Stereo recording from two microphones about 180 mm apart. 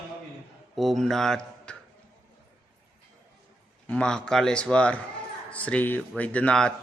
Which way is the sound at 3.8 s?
5° left (ahead or behind).